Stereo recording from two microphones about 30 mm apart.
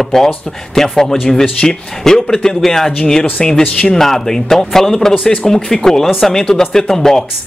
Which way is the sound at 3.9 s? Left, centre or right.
Centre.